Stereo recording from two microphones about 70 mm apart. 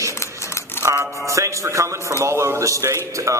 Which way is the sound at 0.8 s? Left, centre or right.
Right.